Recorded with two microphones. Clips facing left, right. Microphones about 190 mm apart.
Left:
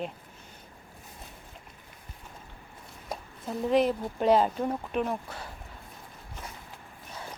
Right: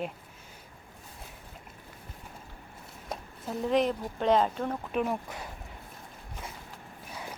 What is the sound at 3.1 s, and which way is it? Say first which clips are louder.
Speech: left 1 dB; centre (ahead or behind).